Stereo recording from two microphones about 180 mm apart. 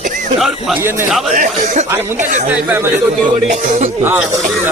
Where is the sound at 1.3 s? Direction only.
45° right (ahead or behind).